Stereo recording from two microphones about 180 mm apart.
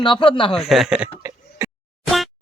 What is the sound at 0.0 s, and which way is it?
Speech, 30° left (ahead or behind).